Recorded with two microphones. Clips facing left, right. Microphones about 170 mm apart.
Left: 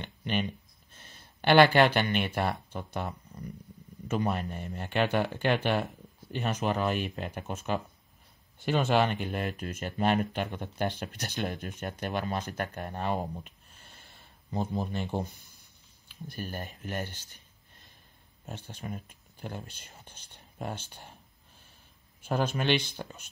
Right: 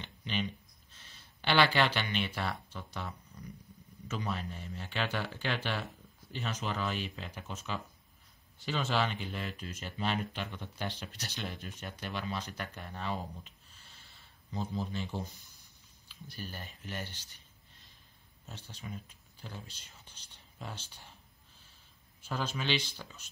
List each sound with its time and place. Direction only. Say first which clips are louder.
0.0 s a sound: left 5 dB; 55° left (ahead or behind)
4.1 s speech: left 7 dB; 55° left (ahead or behind)
18.4 s speech: left 6 dB; 55° left (ahead or behind)
22.2 s speech: left 7 dB; 55° left (ahead or behind)